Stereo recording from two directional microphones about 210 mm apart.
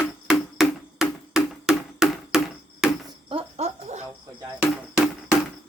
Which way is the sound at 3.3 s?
25° right (ahead or behind).